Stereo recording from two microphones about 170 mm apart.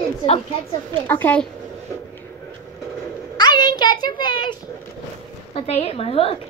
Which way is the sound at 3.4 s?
25° left (ahead or behind).